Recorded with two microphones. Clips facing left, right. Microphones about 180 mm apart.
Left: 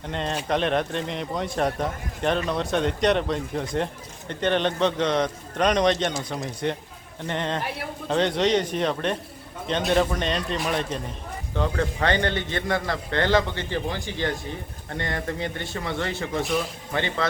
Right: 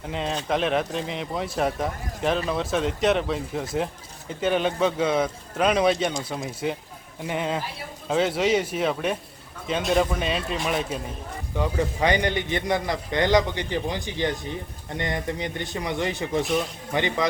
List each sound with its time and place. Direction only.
0.0 s a man's voice: 5° right (ahead or behind)
16.4 s a man's voice: centre (ahead or behind)
16.9 s a man's voice: 15° right (ahead or behind)